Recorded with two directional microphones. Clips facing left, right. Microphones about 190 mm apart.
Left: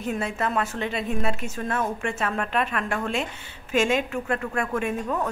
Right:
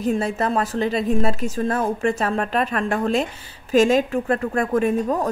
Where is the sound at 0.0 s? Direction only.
35° right (ahead or behind).